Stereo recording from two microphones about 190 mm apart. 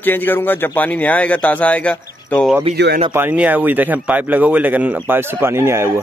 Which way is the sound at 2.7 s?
60° right (ahead or behind).